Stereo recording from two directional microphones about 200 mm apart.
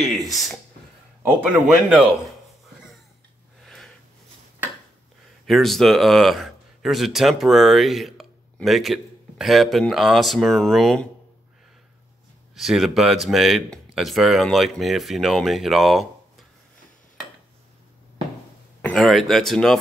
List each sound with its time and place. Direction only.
0.3 s speech: centre (ahead or behind)
3.6 s a sound: centre (ahead or behind)
5.5 s speech: centre (ahead or behind)
12.5 s speech: centre (ahead or behind)
18.8 s speech: 5° left (ahead or behind)